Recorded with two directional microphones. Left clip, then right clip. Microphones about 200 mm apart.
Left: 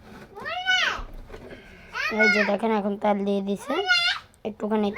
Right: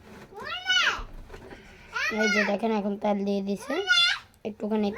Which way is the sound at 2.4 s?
Centre (ahead or behind).